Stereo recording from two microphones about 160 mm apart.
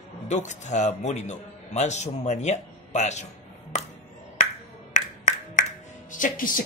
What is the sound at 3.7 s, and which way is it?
Music, 50° left (ahead or behind).